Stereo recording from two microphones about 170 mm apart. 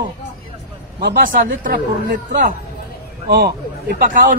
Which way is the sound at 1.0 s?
75° right (ahead or behind).